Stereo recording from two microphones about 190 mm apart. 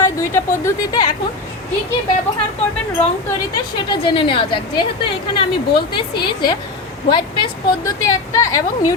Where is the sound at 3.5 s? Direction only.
25° left (ahead or behind).